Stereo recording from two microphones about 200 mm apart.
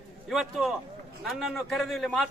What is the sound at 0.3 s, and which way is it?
A man's voice, centre (ahead or behind).